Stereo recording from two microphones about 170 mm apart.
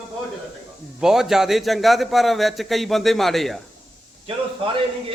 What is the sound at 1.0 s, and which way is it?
A man's voice, 5° right (ahead or behind).